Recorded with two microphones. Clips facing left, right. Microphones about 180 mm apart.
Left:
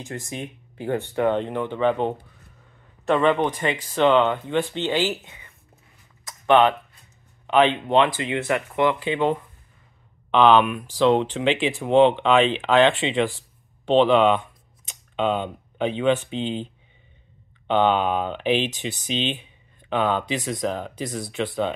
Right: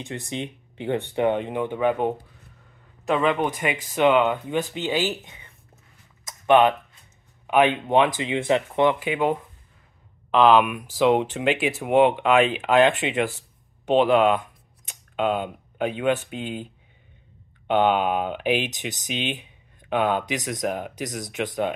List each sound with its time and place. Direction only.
0.3 s speech: 20° right (ahead or behind)
6.2 s a sound: 15° right (ahead or behind)
7.4 s speech: 10° right (ahead or behind)
9.0 s speech: 10° right (ahead or behind)
17.6 s speech: 10° right (ahead or behind)